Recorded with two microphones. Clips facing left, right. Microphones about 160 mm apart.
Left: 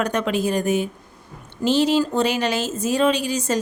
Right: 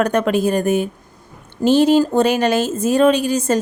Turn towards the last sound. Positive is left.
turn(degrees=-50)  # may be behind; listen again after turning